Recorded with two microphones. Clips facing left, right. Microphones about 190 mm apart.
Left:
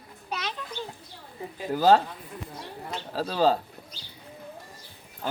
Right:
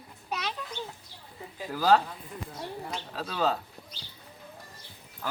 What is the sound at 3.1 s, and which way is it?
Speech, 35° left (ahead or behind).